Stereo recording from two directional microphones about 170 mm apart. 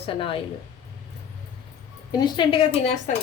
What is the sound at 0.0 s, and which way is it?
Speech, 30° left (ahead or behind).